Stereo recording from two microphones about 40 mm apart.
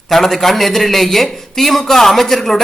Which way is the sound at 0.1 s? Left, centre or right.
Centre.